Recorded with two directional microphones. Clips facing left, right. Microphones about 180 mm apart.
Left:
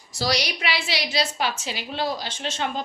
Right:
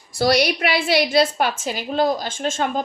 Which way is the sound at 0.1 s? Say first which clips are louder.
Right 8 dB; 55° right (ahead or behind).